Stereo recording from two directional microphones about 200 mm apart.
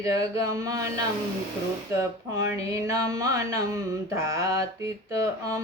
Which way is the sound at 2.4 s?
15° right (ahead or behind).